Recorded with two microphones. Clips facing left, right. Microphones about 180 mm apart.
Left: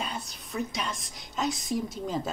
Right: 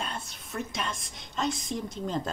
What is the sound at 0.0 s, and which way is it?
A woman's voice, centre (ahead or behind).